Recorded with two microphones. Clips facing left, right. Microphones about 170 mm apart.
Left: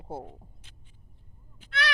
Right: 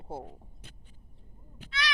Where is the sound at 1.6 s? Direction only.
55° left (ahead or behind).